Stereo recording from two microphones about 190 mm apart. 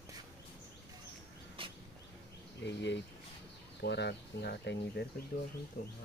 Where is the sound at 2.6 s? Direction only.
65° left (ahead or behind).